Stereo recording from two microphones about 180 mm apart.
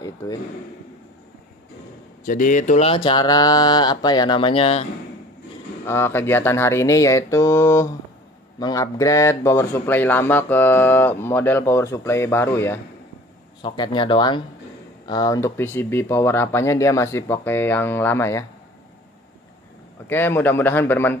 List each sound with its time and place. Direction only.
0.0 s a sound: 20° left (ahead or behind)
2.2 s speech: 45° left (ahead or behind)
5.9 s speech: 15° left (ahead or behind)
13.6 s speech: 25° left (ahead or behind)
20.1 s speech: 10° left (ahead or behind)